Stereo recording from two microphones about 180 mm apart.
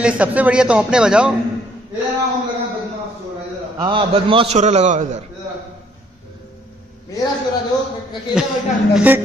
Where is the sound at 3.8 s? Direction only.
25° right (ahead or behind).